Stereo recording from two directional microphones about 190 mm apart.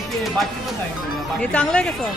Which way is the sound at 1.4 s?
5° left (ahead or behind).